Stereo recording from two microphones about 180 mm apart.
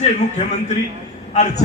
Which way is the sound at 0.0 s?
40° left (ahead or behind).